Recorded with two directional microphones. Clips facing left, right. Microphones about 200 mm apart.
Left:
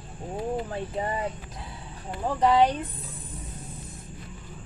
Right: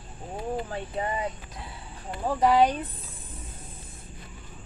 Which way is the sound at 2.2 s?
10° right (ahead or behind).